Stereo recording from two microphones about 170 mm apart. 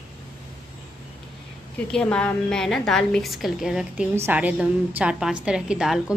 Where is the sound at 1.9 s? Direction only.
5° left (ahead or behind).